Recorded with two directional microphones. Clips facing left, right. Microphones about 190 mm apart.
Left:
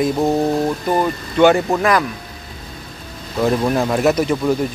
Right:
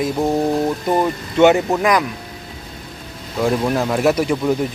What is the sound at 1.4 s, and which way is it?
Speech, 20° right (ahead or behind).